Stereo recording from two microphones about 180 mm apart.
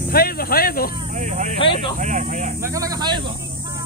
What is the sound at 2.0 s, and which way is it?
Speech, 40° right (ahead or behind).